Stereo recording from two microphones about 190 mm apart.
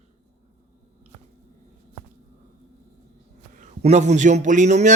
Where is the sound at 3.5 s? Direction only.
40° right (ahead or behind).